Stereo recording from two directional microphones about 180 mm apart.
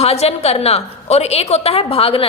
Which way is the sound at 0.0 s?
35° left (ahead or behind).